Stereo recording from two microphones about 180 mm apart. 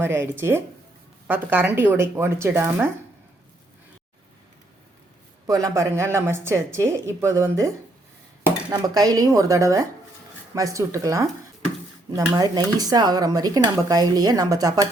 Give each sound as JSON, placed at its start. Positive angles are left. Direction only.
{"t": 0.0, "sound": "speech", "side_deg": -15}
{"t": 5.5, "sound": "speech", "side_deg": -20}
{"t": 8.7, "sound": "speech", "side_deg": -20}